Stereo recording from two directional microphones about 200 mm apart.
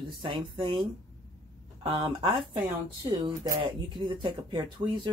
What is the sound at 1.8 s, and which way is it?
Speech, 25° right (ahead or behind).